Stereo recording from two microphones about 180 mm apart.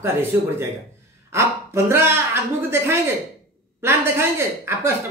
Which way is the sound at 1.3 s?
15° right (ahead or behind).